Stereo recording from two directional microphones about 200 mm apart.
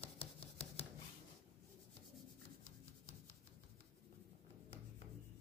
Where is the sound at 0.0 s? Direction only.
30° left (ahead or behind).